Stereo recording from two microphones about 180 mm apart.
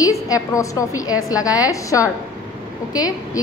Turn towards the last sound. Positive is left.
turn(degrees=20)  # may be behind; listen again after turning